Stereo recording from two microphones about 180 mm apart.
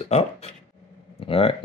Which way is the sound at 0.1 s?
35° left (ahead or behind).